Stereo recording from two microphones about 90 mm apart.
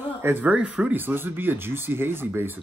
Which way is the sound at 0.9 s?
25° right (ahead or behind).